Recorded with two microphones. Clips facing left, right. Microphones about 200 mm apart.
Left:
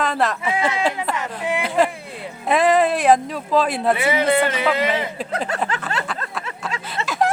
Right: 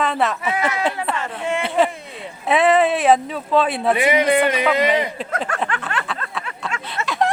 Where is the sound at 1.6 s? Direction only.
Centre (ahead or behind).